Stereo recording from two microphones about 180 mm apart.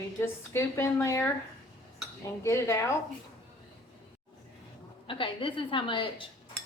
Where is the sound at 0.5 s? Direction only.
15° left (ahead or behind).